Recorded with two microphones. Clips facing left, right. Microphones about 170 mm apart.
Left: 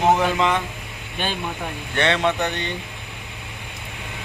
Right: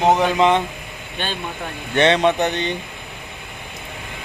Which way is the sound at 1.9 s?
20° right (ahead or behind).